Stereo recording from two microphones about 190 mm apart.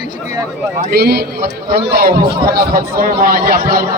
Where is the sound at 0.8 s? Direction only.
50° right (ahead or behind).